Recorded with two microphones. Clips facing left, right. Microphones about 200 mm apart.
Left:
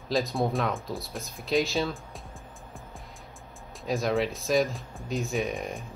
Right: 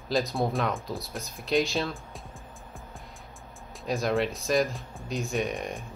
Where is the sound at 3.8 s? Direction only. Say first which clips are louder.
Even; centre (ahead or behind).